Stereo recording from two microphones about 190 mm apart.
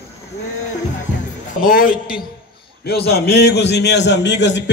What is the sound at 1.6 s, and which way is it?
A man's voice, 45° left (ahead or behind).